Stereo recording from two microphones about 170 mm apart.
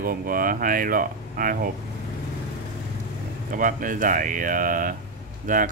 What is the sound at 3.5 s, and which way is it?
Speech, 55° right (ahead or behind).